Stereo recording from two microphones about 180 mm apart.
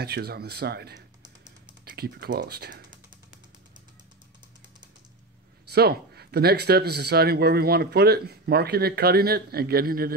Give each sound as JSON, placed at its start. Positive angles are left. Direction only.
{"t": 0.0, "sound": "speech", "side_deg": -60}
{"t": 5.7, "sound": "speech", "side_deg": -60}